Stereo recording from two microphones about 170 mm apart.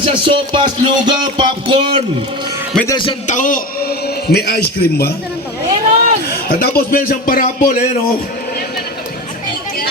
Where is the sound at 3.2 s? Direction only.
50° left (ahead or behind); by 5.1 s 65° left (ahead or behind).